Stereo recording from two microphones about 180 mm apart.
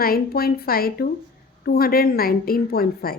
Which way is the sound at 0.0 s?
55° left (ahead or behind).